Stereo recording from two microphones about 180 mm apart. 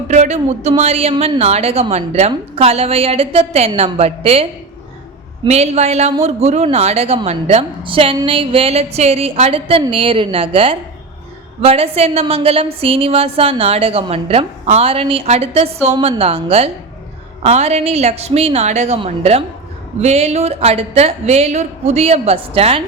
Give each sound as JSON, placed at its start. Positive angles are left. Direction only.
{"t": 0.1, "sound": "a woman's voice", "side_deg": -40}
{"t": 5.5, "sound": "a woman's voice", "side_deg": -35}